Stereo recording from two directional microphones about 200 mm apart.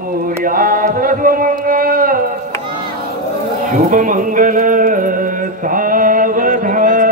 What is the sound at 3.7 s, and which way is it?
Music, 40° right (ahead or behind).